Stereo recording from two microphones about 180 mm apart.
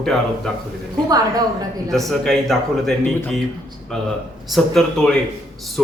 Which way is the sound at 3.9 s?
Centre (ahead or behind).